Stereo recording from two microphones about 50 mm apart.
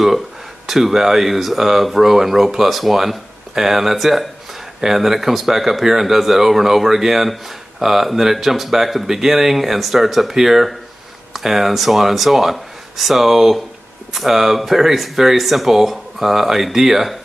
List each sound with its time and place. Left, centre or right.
0.7 s speech: centre